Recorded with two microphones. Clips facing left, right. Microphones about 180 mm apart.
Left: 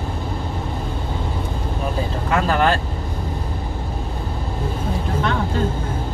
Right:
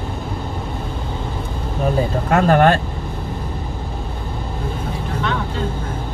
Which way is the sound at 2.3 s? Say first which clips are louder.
Right 5 dB; 50° right (ahead or behind).